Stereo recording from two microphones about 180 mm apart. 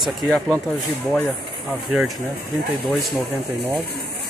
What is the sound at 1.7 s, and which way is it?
Speech, 5° right (ahead or behind).